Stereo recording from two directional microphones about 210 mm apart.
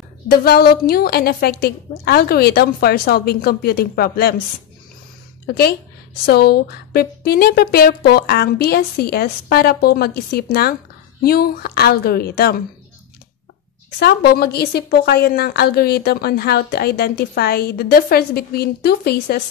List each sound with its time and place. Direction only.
0.4 s a woman's voice: 45° left (ahead or behind)
5.5 s a woman's voice: 50° left (ahead or behind)
13.9 s a woman's voice: 50° left (ahead or behind)